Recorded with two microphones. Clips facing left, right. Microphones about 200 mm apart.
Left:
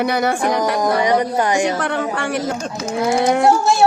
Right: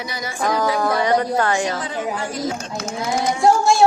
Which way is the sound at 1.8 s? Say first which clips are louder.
Left 4 dB; 70° left (ahead or behind).